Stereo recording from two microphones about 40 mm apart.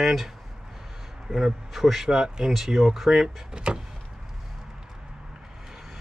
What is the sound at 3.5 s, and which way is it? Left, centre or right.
Vehicle, right.